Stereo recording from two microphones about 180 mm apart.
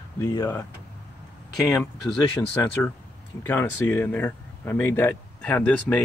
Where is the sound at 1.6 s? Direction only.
15° left (ahead or behind).